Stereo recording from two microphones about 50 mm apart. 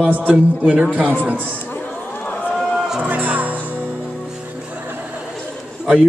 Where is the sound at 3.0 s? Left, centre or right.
Right.